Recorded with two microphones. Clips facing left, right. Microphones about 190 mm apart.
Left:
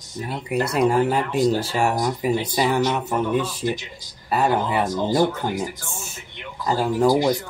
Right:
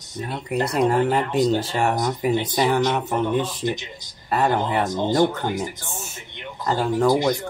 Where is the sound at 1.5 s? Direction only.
20° right (ahead or behind).